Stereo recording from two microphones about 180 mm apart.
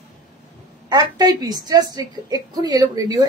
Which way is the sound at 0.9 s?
25° right (ahead or behind).